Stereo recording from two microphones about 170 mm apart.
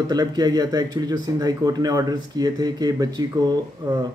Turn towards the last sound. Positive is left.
turn(degrees=-25)  # may be behind; listen again after turning